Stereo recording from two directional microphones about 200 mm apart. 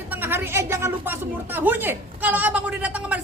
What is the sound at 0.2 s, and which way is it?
A woman's voice, 10° right (ahead or behind).